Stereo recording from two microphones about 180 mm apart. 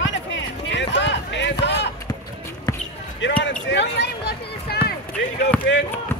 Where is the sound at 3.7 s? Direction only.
70° left (ahead or behind).